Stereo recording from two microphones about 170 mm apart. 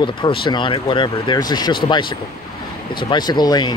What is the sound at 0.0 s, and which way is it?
Speech, 30° left (ahead or behind).